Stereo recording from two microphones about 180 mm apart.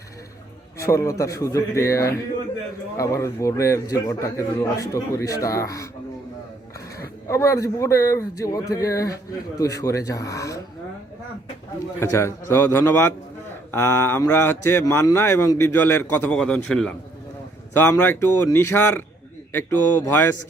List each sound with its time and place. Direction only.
0.8 s speech: 15° left (ahead or behind)
7.3 s speech: 15° left (ahead or behind)
11.9 s speech: 15° left (ahead or behind)